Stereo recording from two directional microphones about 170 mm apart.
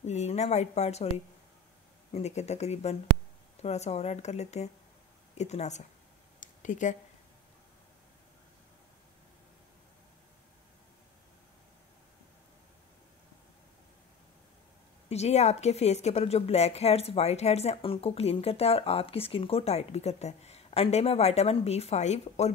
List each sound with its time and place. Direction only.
0.0 s speech: 40° left (ahead or behind)
6.4 s a sound: 45° left (ahead or behind)
15.0 s speech: 40° left (ahead or behind)